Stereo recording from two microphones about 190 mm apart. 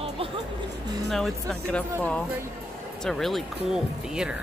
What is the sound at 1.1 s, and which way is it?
Speech, 5° left (ahead or behind).